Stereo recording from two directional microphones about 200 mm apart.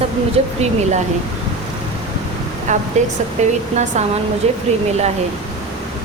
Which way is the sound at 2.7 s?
35° right (ahead or behind).